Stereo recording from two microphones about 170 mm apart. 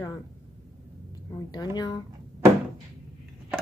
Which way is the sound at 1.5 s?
25° left (ahead or behind).